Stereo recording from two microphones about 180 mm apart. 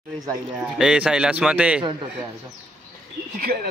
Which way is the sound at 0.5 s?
5° right (ahead or behind).